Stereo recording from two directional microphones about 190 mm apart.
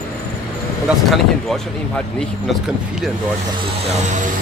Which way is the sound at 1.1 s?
Centre (ahead or behind).